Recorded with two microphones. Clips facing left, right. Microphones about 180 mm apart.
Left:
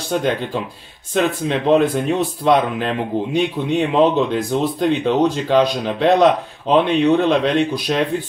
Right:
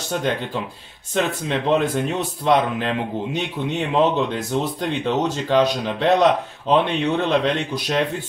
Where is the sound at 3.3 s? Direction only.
15° left (ahead or behind).